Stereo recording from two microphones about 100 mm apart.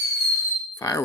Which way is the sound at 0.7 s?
30° left (ahead or behind).